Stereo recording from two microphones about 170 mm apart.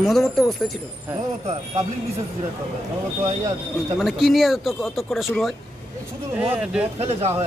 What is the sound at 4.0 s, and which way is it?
Speech, centre (ahead or behind).